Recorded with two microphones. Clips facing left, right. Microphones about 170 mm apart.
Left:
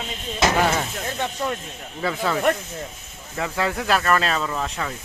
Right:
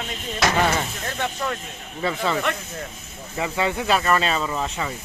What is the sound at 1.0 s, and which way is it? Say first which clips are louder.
Speech: left 1 dB; 20° left (ahead or behind).